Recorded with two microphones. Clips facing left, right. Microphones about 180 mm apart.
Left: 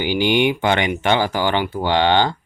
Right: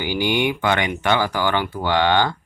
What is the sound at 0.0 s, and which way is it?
Speech, 20° left (ahead or behind).